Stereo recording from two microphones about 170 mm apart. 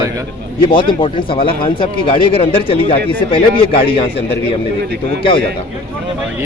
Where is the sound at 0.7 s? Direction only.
30° left (ahead or behind).